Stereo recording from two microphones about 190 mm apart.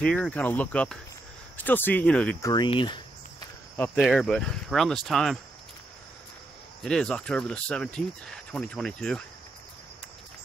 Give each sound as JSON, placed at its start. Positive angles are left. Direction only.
{"t": 0.0, "sound": "speech", "side_deg": 5}
{"t": 2.5, "sound": "speech", "side_deg": 25}
{"t": 3.7, "sound": "speech", "side_deg": 10}
{"t": 6.8, "sound": "speech", "side_deg": 5}